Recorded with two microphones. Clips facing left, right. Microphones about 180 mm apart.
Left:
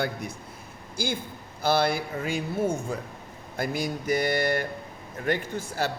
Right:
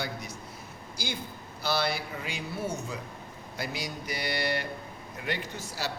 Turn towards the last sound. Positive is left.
turn(degrees=55)  # may be behind; listen again after turning